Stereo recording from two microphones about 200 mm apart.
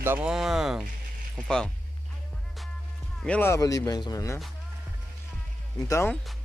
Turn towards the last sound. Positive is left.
turn(degrees=10)  # may be behind; listen again after turning